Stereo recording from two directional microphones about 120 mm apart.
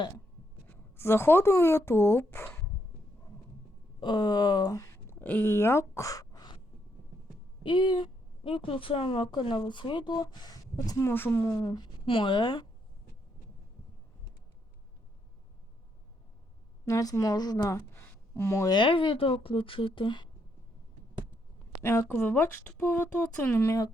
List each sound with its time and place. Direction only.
0.7 s speech: 20° left (ahead or behind)
4.0 s speech: 35° left (ahead or behind)
5.2 s speech: 15° left (ahead or behind); by 6.6 s 35° left (ahead or behind)
7.6 s a woman's voice: 45° left (ahead or behind)
16.8 s a woman's voice: 30° left (ahead or behind)
17.9 s a sound: 20° left (ahead or behind)
18.7 s speech: 45° left (ahead or behind)
21.8 s speech: 20° left (ahead or behind)